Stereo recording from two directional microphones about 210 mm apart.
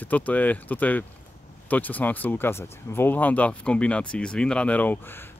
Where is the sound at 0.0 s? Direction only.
5° left (ahead or behind).